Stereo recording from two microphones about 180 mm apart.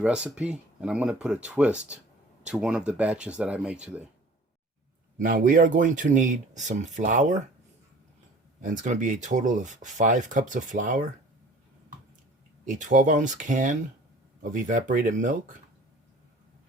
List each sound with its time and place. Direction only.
0.0 s speech: 5° right (ahead or behind)
5.1 s speech: 45° right (ahead or behind)
8.6 s speech: 45° right (ahead or behind)
12.6 s speech: 45° right (ahead or behind)